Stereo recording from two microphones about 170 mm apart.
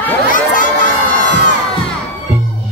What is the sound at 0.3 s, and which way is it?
Children shouting, 50° left (ahead or behind).